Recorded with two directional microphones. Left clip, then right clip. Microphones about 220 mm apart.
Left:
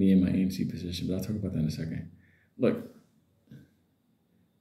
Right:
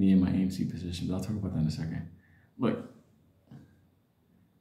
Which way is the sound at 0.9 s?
75° right (ahead or behind).